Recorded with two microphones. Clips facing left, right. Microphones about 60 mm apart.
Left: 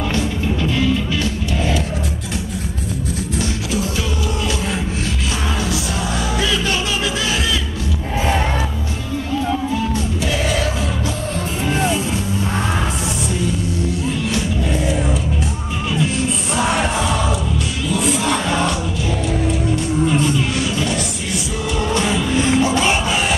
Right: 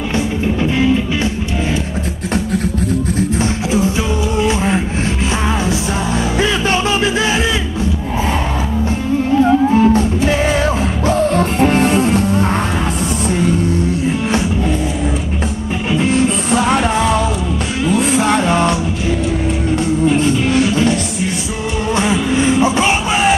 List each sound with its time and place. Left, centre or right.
0.1 s music: right
3.2 s music: right
9.4 s music: right
11.1 s music: right
17.8 s music: right
20.5 s music: right
21.9 s a sound: centre